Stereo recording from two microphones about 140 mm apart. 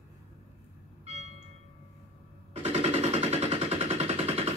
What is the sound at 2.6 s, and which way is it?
Machine gun, 50° right (ahead or behind).